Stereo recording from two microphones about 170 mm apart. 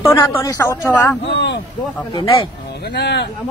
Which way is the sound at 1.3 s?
90° left.